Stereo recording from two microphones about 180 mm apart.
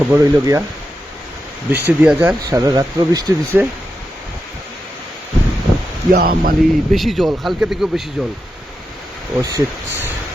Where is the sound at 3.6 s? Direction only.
10° right (ahead or behind).